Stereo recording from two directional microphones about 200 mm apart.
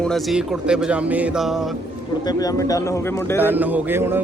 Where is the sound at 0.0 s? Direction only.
Centre (ahead or behind).